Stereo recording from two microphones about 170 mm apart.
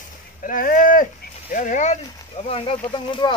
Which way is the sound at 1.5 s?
50° left (ahead or behind).